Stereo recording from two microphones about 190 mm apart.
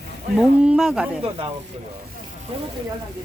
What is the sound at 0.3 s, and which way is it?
Speech, 5° right (ahead or behind).